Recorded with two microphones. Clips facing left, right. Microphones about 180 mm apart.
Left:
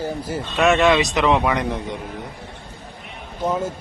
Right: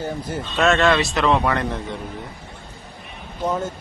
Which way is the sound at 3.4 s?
10° left (ahead or behind).